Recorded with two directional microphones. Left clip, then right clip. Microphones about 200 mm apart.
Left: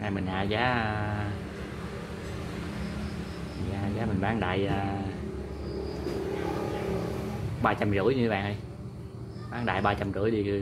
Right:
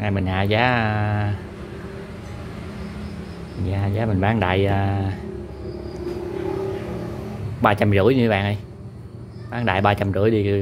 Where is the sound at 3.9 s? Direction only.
45° right (ahead or behind).